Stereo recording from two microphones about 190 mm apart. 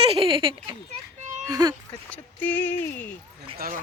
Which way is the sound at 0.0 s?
30° right (ahead or behind).